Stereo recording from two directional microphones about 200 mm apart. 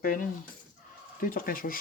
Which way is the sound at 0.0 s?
45° left (ahead or behind).